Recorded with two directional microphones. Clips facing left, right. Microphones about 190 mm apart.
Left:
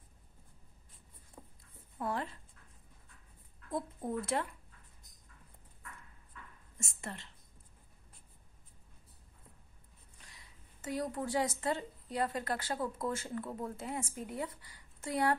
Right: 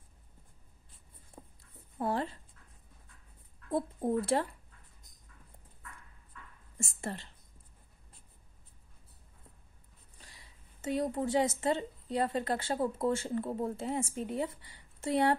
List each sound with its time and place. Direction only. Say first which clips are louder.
1.4 s a sound: right 2 dB; 10° right (ahead or behind)
2.0 s speech: right 4 dB; 30° right (ahead or behind)
3.7 s a woman's voice: right 6 dB; 30° right (ahead or behind)
6.8 s whispering: right 6 dB; 35° right (ahead or behind)
10.1 s a woman's voice: right 2 dB; 30° right (ahead or behind)